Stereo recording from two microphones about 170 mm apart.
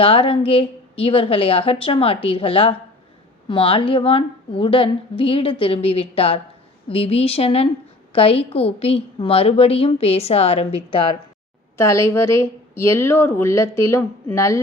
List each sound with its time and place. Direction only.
0.0 s a woman's voice: 35° left (ahead or behind)
11.8 s a woman's voice: 15° left (ahead or behind)